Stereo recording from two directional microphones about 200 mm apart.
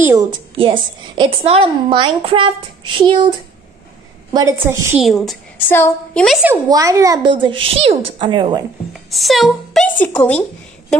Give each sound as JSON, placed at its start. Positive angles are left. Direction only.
{"t": 0.0, "sound": "a woman's voice", "side_deg": -15}
{"t": 5.0, "sound": "a woman's voice", "side_deg": 0}
{"t": 6.5, "sound": "a woman's voice", "side_deg": -15}
{"t": 9.1, "sound": "a woman's voice", "side_deg": 0}